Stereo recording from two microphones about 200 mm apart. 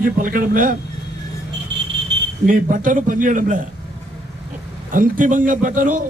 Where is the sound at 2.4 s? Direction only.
40° right (ahead or behind).